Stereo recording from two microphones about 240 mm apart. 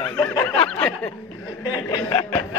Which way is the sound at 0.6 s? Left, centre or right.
Centre.